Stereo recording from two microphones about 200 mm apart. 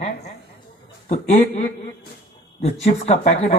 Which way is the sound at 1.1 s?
40° left (ahead or behind).